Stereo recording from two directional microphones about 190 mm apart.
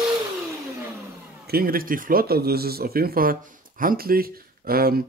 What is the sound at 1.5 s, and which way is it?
Speech, 50° right (ahead or behind).